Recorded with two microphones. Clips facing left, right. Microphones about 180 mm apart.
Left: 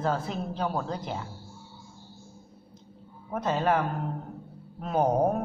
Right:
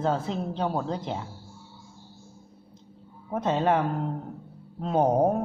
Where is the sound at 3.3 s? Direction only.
25° right (ahead or behind).